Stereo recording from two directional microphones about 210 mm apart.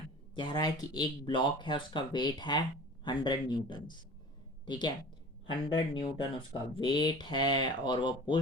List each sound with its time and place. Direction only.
0.3 s speech: 20° left (ahead or behind)